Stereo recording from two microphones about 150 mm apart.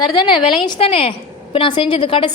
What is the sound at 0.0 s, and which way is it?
A woman's voice, 30° left (ahead or behind).